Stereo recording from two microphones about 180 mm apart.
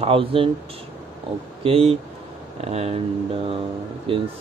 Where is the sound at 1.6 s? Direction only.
35° right (ahead or behind).